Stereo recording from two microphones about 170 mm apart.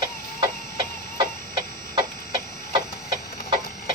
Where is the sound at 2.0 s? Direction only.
25° right (ahead or behind).